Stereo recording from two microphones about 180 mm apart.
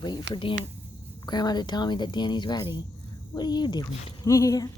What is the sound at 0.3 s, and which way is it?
Speech, 30° left (ahead or behind).